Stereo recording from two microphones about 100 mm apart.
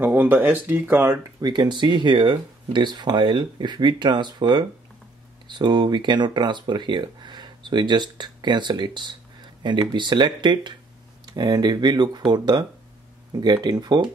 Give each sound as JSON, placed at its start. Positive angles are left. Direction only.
{"t": 0.0, "sound": "speech", "side_deg": -15}
{"t": 1.4, "sound": "speech", "side_deg": -45}